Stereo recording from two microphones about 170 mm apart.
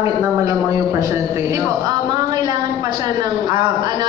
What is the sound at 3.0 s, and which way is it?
Speech, 20° right (ahead or behind).